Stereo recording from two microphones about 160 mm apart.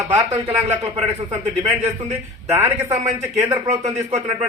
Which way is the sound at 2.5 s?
15° right (ahead or behind).